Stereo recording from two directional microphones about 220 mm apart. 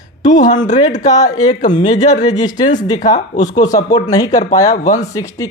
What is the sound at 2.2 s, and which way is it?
Speech, 20° left (ahead or behind).